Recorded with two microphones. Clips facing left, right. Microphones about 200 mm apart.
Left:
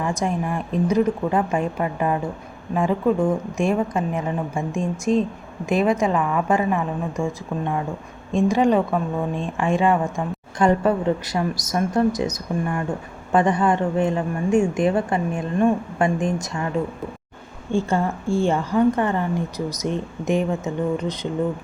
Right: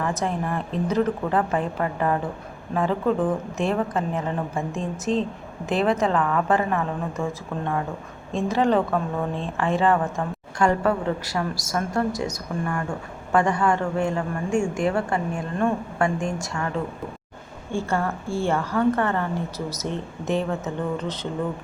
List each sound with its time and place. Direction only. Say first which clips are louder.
0.0 s a woman's voice: left 2 dB; 15° left (ahead or behind)